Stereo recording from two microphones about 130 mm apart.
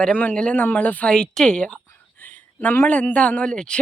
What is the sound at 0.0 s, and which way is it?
Speech, 10° left (ahead or behind).